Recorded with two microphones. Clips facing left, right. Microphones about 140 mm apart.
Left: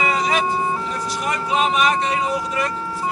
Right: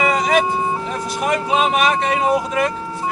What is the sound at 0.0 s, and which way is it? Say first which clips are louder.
Vehicle: right 3 dB; 45° right (ahead or behind).